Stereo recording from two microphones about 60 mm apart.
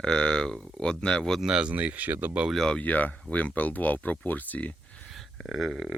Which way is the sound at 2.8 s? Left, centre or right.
Left.